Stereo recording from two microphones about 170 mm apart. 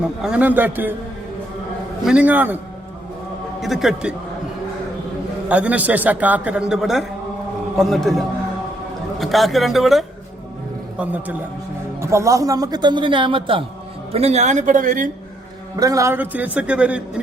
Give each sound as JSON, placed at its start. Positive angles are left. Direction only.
{"t": 0.2, "sound": "a man's voice", "side_deg": -5}
{"t": 2.0, "sound": "a man's voice", "side_deg": -10}
{"t": 3.6, "sound": "speech", "side_deg": 0}
{"t": 5.5, "sound": "a man's voice", "side_deg": -10}
{"t": 15.7, "sound": "a man's voice", "side_deg": -20}